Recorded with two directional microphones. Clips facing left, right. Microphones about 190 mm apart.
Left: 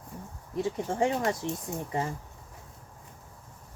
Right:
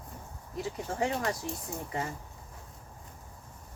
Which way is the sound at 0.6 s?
25° left (ahead or behind).